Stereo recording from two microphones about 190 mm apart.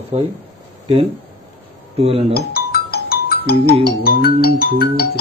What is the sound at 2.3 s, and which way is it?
Speech, 55° left (ahead or behind).